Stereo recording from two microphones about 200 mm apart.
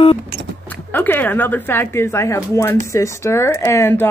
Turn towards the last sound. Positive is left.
turn(degrees=15)  # may be behind; listen again after turning